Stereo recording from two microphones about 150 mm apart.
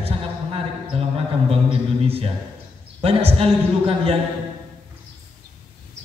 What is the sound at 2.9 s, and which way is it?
A man's voice, 40° right (ahead or behind).